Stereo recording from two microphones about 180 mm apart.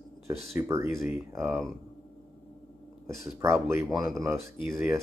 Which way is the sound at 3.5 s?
15° right (ahead or behind).